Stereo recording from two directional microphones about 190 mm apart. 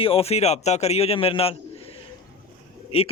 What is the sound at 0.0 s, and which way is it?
A man's voice, 30° left (ahead or behind).